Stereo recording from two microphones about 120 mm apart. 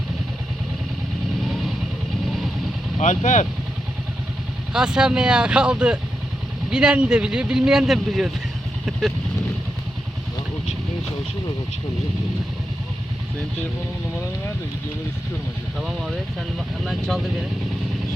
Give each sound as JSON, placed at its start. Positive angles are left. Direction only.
{"t": 3.0, "sound": "speech", "side_deg": 85}
{"t": 4.7, "sound": "speech", "side_deg": -5}
{"t": 8.9, "sound": "vehicle", "side_deg": 0}
{"t": 15.8, "sound": "speech", "side_deg": -5}